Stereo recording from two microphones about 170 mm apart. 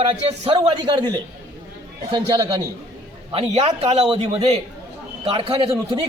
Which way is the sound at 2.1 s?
25° right (ahead or behind).